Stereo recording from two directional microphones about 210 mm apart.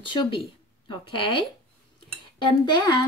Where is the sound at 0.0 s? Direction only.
25° left (ahead or behind).